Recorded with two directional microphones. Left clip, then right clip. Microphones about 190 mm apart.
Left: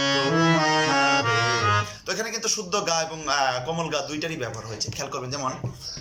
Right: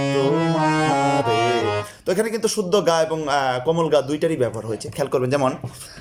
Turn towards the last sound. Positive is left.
turn(degrees=-50)  # may be behind; listen again after turning